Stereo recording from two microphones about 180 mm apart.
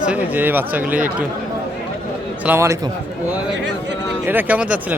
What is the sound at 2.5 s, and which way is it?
Speech, 15° right (ahead or behind).